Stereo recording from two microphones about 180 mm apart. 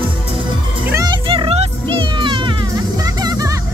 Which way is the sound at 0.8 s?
20° right (ahead or behind).